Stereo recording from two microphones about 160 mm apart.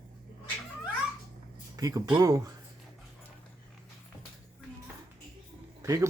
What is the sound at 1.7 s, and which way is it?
Speech, 20° right (ahead or behind).